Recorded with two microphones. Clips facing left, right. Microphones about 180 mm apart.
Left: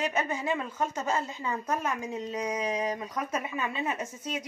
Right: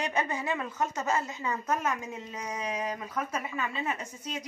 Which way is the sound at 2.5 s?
20° left (ahead or behind).